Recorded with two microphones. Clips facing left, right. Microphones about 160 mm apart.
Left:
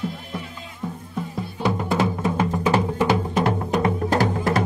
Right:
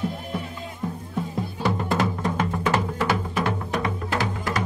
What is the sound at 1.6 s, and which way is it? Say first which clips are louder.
Music: left 2 dB; 5° left (ahead or behind).